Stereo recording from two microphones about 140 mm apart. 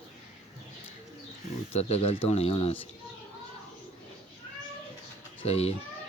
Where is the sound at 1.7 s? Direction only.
50° left (ahead or behind).